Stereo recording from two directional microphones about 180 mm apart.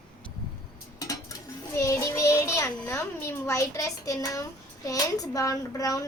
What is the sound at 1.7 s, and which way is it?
A child's voice, 15° left (ahead or behind).